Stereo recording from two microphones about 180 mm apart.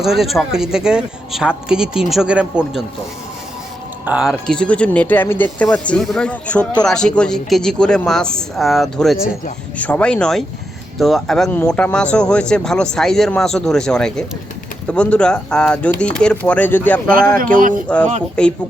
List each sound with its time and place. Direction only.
0.0 s speech: centre (ahead or behind)
4.0 s speech: 5° right (ahead or behind)
17.1 s speech: 55° right (ahead or behind)
17.8 s speech: 5° left (ahead or behind)